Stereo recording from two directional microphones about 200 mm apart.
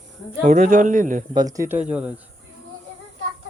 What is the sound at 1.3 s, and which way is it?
Speech, 20° right (ahead or behind).